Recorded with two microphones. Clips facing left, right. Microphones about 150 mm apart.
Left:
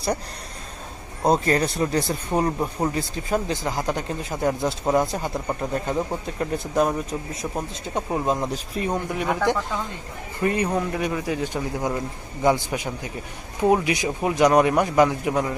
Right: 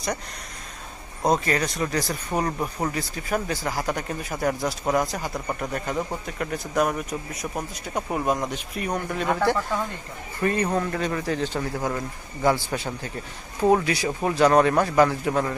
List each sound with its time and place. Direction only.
1.2 s speech: 30° left (ahead or behind)
2.3 s speech: 15° left (ahead or behind)
2.9 s speech: 25° left (ahead or behind)